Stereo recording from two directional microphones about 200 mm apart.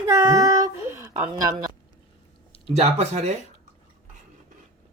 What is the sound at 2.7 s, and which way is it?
Speech, 30° right (ahead or behind).